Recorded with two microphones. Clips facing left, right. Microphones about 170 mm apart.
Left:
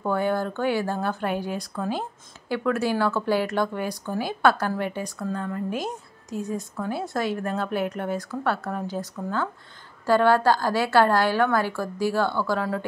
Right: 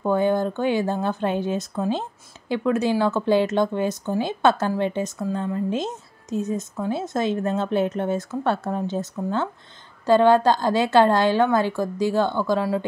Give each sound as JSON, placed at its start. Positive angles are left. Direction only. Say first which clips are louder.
{"t": 0.0, "sound": "speech", "louder": "right 4 dB", "side_deg": -20}